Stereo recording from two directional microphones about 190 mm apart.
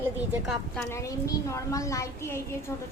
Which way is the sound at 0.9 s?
15° left (ahead or behind).